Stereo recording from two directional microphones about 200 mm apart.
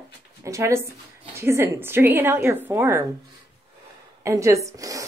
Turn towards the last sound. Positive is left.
turn(degrees=-15)  # may be behind; listen again after turning